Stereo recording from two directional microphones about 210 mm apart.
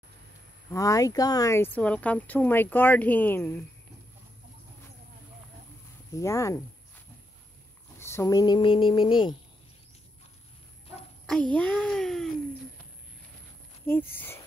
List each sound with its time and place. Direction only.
0.7 s speech: 15° left (ahead or behind)
6.1 s speech: 15° left (ahead or behind)
8.0 s speech: 15° left (ahead or behind)
11.5 s speech: 5° left (ahead or behind)
13.8 s speech: 10° left (ahead or behind)